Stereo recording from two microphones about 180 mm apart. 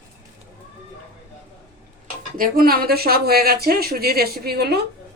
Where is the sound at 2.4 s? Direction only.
55° right (ahead or behind).